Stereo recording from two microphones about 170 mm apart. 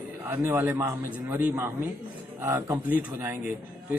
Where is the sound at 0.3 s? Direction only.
10° right (ahead or behind).